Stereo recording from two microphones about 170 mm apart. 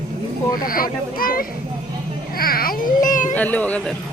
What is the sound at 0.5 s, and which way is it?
Speech, 55° left (ahead or behind).